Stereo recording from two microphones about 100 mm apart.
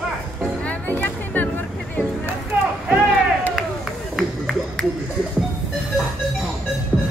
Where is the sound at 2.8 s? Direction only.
Centre (ahead or behind).